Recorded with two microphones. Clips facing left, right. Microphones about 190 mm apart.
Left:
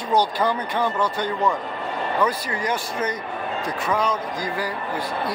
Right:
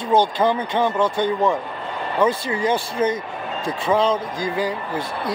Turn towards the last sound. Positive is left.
turn(degrees=-25)  # may be behind; listen again after turning